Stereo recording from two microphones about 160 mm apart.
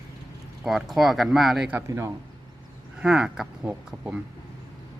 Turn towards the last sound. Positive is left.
turn(degrees=-10)  # may be behind; listen again after turning